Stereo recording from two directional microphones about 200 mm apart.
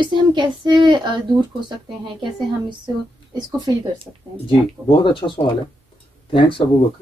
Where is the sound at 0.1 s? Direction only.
25° right (ahead or behind).